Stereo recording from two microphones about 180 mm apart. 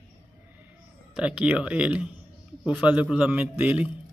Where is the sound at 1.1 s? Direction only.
5° right (ahead or behind).